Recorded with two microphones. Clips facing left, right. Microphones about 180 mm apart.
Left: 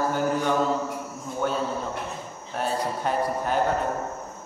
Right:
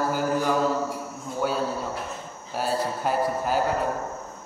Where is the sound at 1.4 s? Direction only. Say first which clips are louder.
Even; 5° right (ahead or behind).